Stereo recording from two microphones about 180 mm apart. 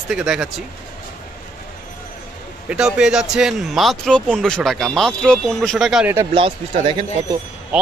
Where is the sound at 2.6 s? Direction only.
5° right (ahead or behind).